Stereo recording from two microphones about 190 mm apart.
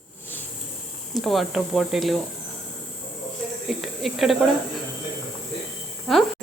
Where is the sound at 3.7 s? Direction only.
Centre (ahead or behind).